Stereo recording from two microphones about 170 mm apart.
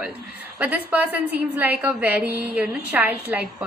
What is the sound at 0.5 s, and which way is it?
A woman's voice, 10° right (ahead or behind).